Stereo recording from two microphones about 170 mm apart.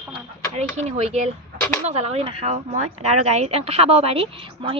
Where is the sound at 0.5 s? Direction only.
40° right (ahead or behind).